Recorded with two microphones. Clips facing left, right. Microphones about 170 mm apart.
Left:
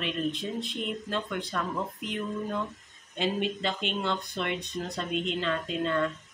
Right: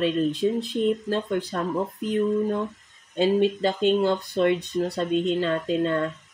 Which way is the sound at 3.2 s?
35° right (ahead or behind).